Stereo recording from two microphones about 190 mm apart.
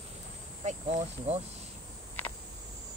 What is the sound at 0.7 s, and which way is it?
Speech, 35° right (ahead or behind).